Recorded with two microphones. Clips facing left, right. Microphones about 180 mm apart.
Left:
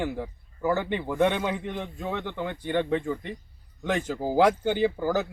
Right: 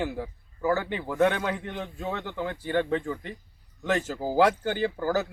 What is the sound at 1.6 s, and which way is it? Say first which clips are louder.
Speech: left 2 dB; 15° left (ahead or behind).